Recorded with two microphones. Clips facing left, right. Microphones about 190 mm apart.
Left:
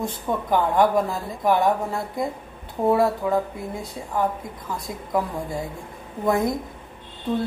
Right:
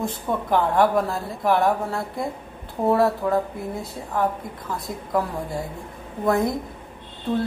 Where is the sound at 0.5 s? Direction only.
Centre (ahead or behind).